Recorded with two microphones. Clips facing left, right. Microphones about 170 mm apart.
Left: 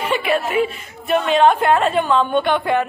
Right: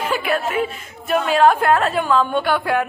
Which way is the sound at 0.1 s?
Centre (ahead or behind).